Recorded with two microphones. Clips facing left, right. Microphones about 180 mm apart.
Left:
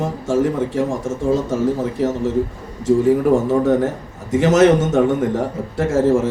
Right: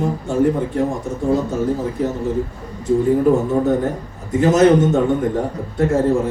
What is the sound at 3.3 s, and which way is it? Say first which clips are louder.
A man's voice: left 1 dB; 90° left.